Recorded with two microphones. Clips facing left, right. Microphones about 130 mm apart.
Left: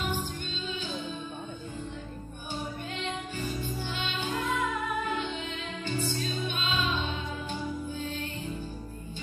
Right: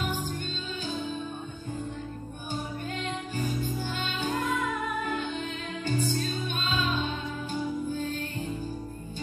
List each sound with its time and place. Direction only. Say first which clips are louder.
3.3 s music: right 3 dB; 45° right (ahead or behind)